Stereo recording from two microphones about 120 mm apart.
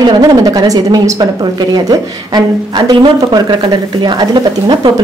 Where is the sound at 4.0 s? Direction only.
40° right (ahead or behind).